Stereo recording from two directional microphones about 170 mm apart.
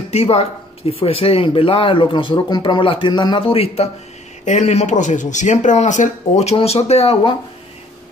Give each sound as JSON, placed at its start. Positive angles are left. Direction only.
{"t": 0.1, "sound": "speech", "side_deg": 40}